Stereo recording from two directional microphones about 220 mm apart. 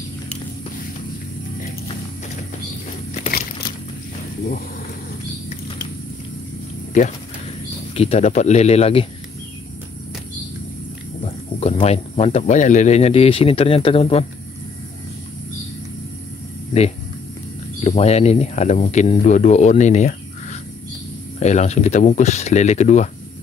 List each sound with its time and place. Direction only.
3.2 s a sound: 40° left (ahead or behind)
6.9 s speech: 35° left (ahead or behind)
11.2 s speech: 25° left (ahead or behind)
17.8 s speech: 30° left (ahead or behind)